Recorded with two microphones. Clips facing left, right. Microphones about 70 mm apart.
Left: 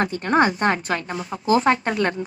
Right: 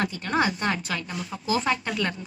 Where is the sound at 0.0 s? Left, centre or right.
Left.